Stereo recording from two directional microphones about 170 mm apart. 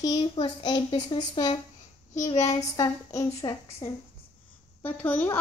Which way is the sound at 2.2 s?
40° left (ahead or behind).